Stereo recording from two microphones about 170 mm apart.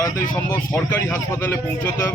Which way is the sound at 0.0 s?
15° left (ahead or behind).